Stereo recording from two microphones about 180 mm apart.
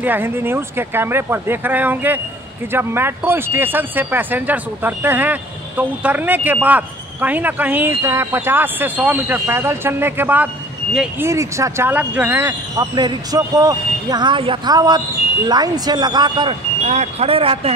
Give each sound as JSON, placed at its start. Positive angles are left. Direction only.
{"t": 0.0, "sound": "speech", "side_deg": -10}
{"t": 11.2, "sound": "speech", "side_deg": -15}
{"t": 12.9, "sound": "speech", "side_deg": -25}
{"t": 16.8, "sound": "speech", "side_deg": -35}